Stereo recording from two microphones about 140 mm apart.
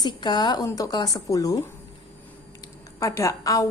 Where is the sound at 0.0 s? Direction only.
30° left (ahead or behind).